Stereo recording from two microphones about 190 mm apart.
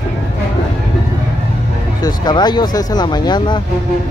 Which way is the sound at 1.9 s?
20° left (ahead or behind).